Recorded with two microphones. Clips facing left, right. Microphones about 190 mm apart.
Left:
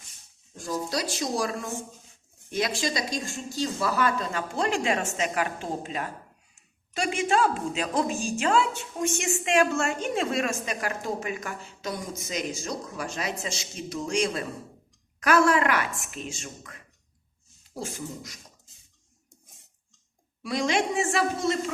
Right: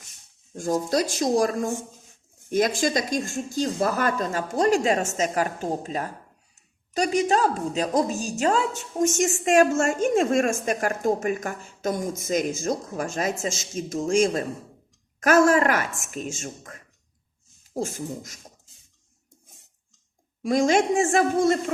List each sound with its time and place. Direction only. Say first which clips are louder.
0.5 s a woman's voice: right 7 dB; 50° right (ahead or behind)
20.4 s a woman's voice: right 6 dB; 45° right (ahead or behind)